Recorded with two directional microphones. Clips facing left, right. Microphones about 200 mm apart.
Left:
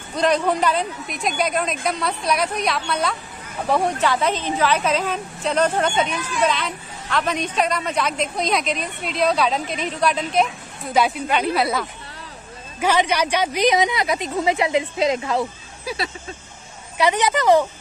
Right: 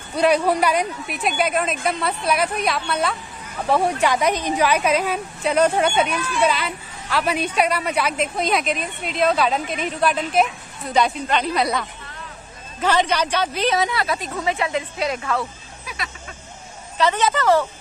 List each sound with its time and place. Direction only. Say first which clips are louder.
0.1 s a woman's voice: right 2 dB; 10° right (ahead or behind)
4.0 s a woman's voice: right 1 dB; 15° right (ahead or behind)
11.0 s a woman's voice: even; 5° left (ahead or behind)
15.8 s speech: left 7 dB; 35° left (ahead or behind)
17.0 s speech: left 1 dB; 15° left (ahead or behind)